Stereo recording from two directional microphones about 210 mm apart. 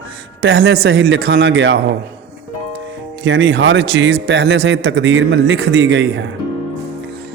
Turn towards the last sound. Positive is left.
turn(degrees=-60)  # may be behind; listen again after turning